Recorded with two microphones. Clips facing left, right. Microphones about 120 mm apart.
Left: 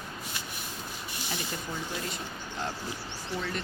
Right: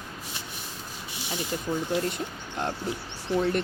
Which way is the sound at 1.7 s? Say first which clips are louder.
Right 10 dB; 15° right (ahead or behind).